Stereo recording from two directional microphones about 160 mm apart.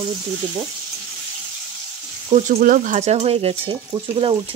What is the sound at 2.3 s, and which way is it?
Frying, 45° right (ahead or behind).